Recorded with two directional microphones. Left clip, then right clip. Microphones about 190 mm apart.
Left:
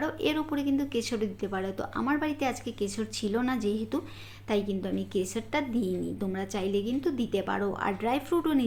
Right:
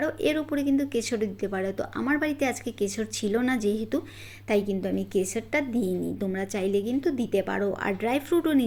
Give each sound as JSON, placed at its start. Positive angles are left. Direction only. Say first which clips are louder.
{"t": 0.0, "sound": "a woman's voice", "louder": "right 3 dB", "side_deg": -10}